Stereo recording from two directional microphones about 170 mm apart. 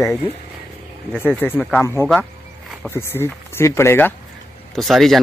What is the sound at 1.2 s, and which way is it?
Speech, 10° left (ahead or behind).